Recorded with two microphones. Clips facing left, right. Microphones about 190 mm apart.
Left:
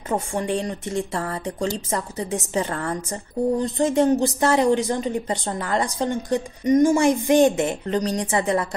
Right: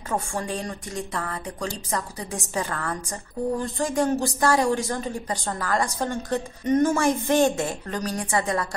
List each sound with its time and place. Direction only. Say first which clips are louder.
0.1 s speech: left 4 dB; 20° left (ahead or behind)